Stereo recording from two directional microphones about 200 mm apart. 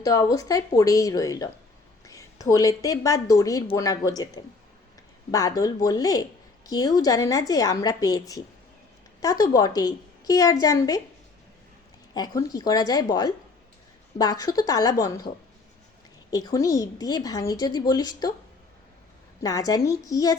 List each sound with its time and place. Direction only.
0.0 s a woman's voice: 20° left (ahead or behind)
12.1 s a woman's voice: 20° left (ahead or behind)
16.3 s a woman's voice: 20° left (ahead or behind)
19.4 s a woman's voice: 15° left (ahead or behind)